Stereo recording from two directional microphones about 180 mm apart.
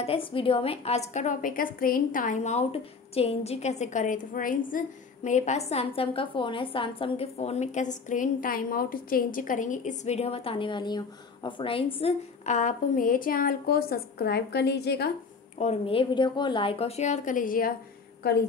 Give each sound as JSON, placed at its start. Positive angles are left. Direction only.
{"t": 0.0, "sound": "a woman's voice", "side_deg": 30}
{"t": 15.6, "sound": "a woman's voice", "side_deg": 35}